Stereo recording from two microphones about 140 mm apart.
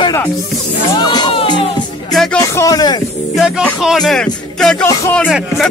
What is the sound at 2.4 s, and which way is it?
Music, 25° left (ahead or behind).